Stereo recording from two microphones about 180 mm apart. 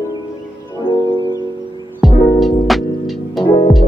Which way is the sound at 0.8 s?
25° left (ahead or behind).